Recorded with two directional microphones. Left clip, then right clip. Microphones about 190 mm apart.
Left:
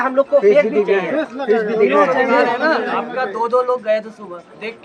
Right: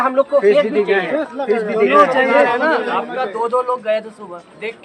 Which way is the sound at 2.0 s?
35° right (ahead or behind).